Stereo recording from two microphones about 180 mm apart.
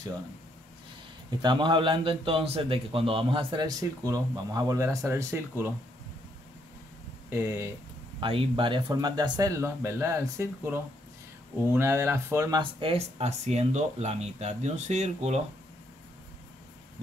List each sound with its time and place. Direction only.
1.4 s a man's voice: 25° right (ahead or behind)
7.2 s speech: 15° right (ahead or behind)
8.2 s a man's voice: 30° right (ahead or behind)
12.9 s speech: 35° right (ahead or behind)